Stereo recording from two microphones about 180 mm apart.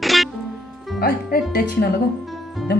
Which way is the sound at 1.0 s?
60° left (ahead or behind).